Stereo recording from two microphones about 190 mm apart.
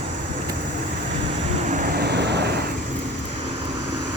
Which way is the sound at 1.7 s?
50° right (ahead or behind).